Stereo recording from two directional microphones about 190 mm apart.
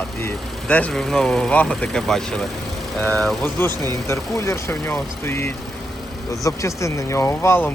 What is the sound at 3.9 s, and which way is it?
Speech, 15° left (ahead or behind).